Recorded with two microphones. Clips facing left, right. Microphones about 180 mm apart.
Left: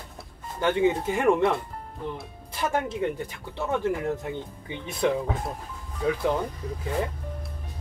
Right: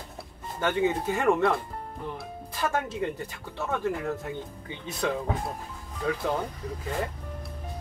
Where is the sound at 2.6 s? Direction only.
15° left (ahead or behind).